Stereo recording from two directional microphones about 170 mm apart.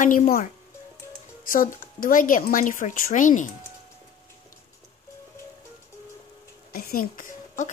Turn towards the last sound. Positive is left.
turn(degrees=55)  # may be behind; listen again after turning